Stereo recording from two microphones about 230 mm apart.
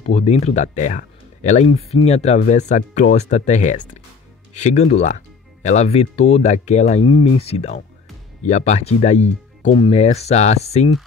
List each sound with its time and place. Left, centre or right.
0.0 s speech: left